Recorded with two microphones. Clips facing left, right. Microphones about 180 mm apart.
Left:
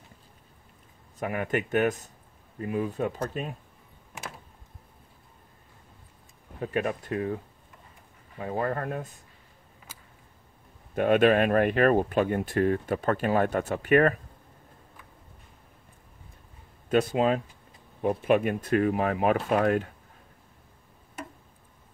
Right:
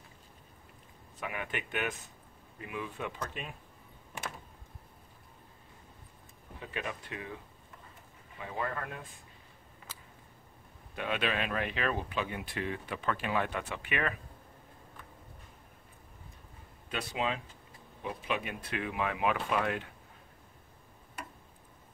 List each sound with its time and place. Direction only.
1.2 s speech: 45° left (ahead or behind)
6.6 s speech: 45° left (ahead or behind)
11.0 s speech: 50° left (ahead or behind)
16.9 s speech: 45° left (ahead or behind)